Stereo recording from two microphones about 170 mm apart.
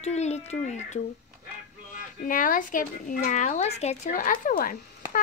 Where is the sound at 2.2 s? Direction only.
55° left (ahead or behind).